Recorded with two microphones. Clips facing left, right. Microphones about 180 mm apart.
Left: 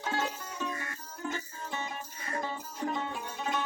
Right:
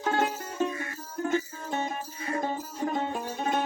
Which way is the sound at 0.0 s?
55° right (ahead or behind).